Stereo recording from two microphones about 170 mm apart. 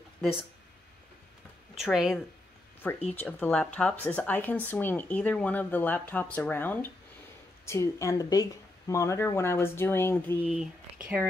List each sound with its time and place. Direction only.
1.8 s speech: centre (ahead or behind)
2.8 s speech: 10° left (ahead or behind)
10.4 s speech: 5° right (ahead or behind)